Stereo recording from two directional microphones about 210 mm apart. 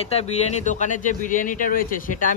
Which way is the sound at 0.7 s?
35° left (ahead or behind).